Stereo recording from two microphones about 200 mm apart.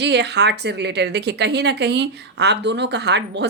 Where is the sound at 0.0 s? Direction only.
60° right (ahead or behind).